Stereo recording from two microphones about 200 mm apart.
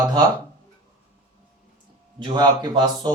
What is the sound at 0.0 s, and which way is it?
Speech, 20° right (ahead or behind).